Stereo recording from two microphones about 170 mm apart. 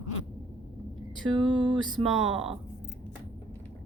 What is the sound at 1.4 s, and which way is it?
Music, 30° right (ahead or behind).